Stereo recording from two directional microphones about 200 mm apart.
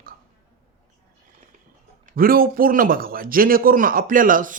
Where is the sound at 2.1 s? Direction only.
45° right (ahead or behind).